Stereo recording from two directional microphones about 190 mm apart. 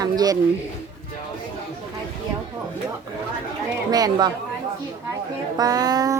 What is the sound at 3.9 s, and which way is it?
Speech, 20° right (ahead or behind).